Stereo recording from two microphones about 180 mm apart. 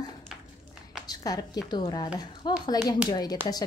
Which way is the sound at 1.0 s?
20° left (ahead or behind).